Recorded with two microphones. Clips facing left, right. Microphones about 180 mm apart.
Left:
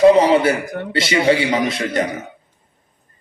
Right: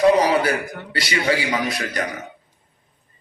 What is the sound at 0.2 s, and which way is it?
A man's voice, 25° left (ahead or behind).